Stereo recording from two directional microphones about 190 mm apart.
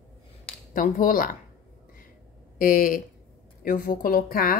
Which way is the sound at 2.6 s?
45° left (ahead or behind).